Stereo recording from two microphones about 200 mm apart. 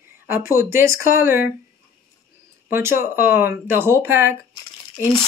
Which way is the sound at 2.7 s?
10° right (ahead or behind).